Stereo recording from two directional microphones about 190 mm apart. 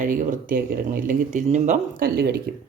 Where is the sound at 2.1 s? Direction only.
55° right (ahead or behind).